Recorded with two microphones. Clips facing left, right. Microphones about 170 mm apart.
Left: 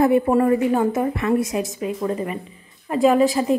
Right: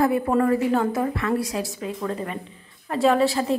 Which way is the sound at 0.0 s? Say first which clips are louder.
Left 4 dB; 20° left (ahead or behind).